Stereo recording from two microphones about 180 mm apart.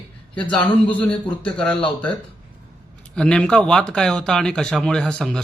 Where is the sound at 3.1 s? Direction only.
5° left (ahead or behind).